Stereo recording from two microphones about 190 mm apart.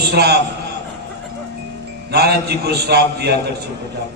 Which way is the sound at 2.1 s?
60° right (ahead or behind).